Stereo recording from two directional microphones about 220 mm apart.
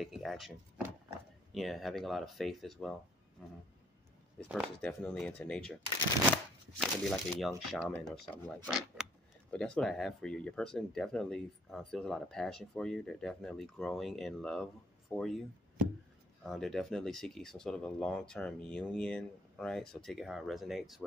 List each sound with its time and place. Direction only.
0.0 s speech: centre (ahead or behind)
1.5 s speech: centre (ahead or behind)
3.4 s a sound: 5° left (ahead or behind)
4.4 s speech: 5° right (ahead or behind)
16.4 s speech: centre (ahead or behind)